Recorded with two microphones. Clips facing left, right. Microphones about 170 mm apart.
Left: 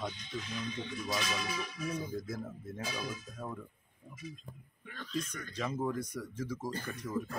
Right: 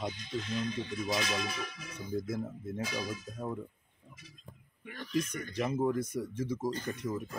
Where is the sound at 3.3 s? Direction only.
25° right (ahead or behind).